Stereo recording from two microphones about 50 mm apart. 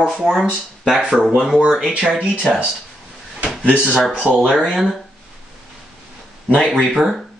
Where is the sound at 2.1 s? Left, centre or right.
Right.